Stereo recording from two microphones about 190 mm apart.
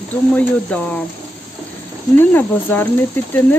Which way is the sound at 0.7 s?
5° left (ahead or behind).